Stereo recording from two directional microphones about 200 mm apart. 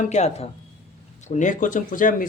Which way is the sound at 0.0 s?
35° left (ahead or behind).